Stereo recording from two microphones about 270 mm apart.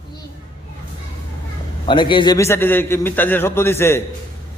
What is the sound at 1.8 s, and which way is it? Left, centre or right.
A man's voice, centre.